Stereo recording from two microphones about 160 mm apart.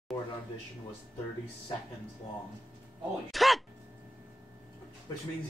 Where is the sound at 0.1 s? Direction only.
20° left (ahead or behind).